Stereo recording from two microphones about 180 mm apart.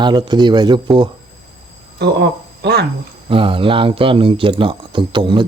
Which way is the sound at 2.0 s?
70° right (ahead or behind).